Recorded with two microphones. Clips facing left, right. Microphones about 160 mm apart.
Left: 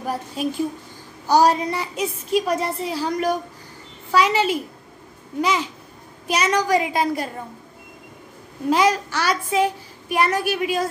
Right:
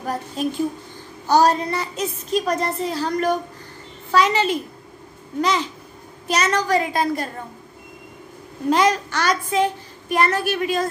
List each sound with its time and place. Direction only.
0.0 s a woman's voice: 10° left (ahead or behind)
8.6 s a woman's voice: 5° left (ahead or behind)